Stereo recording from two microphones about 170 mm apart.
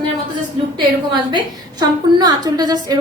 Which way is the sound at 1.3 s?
25° right (ahead or behind).